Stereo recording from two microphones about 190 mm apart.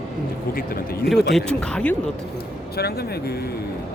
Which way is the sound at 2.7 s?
55° left (ahead or behind).